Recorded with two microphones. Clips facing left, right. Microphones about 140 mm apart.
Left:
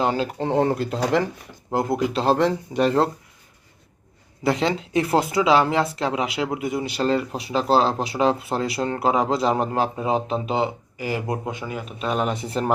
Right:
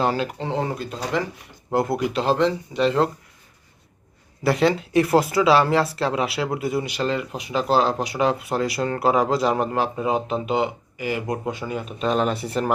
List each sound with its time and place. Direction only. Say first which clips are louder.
0.0 s speech: even; 20° left (ahead or behind)
0.4 s speech: left 5 dB; 55° left (ahead or behind); by 1.2 s 70° left (ahead or behind)
1.7 s speech: even; 25° left (ahead or behind)
2.4 s speech: even; 50° left (ahead or behind)
4.4 s speech: right 2 dB; 20° left (ahead or behind)
6.8 s speech: left 3 dB; 35° left (ahead or behind)
11.4 s speech: right 2 dB; 10° left (ahead or behind); by 12.7 s 25° left (ahead or behind)